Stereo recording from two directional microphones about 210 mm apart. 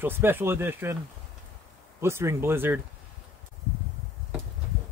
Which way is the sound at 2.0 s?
15° right (ahead or behind).